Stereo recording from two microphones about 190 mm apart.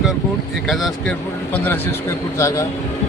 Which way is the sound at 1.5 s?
10° left (ahead or behind).